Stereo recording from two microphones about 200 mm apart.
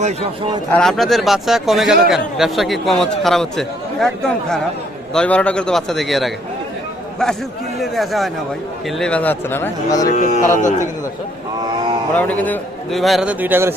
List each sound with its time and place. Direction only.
0.7 s speech: centre (ahead or behind)
7.8 s speech: centre (ahead or behind)
10.2 s speech: 35° left (ahead or behind)
11.6 s mantra: 20° right (ahead or behind)
12.1 s speech: 10° left (ahead or behind); by 13.7 s 10° right (ahead or behind)